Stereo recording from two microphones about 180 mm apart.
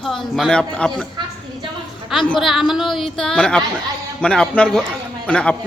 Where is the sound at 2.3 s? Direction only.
Centre (ahead or behind).